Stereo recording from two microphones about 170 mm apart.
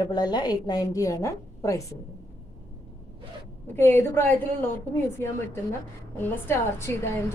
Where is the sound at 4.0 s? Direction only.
15° left (ahead or behind).